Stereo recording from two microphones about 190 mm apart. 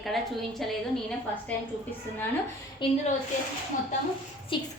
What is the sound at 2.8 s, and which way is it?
Speech, 25° left (ahead or behind).